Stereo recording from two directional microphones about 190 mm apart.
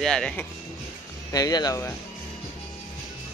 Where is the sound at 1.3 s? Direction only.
20° left (ahead or behind).